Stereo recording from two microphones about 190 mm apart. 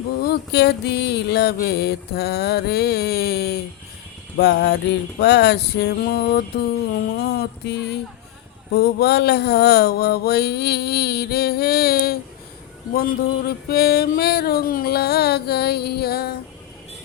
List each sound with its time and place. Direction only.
0.2 s mantra: 60° left (ahead or behind)
12.9 s a man's voice: 50° left (ahead or behind)
13.7 s mantra: 55° left (ahead or behind)